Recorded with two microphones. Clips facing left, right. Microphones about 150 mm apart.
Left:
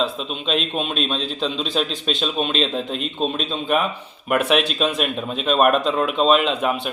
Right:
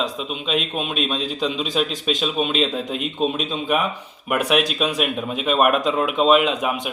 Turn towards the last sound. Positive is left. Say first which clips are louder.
# left 1 dB
turn(degrees=-10)  # may be behind; listen again after turning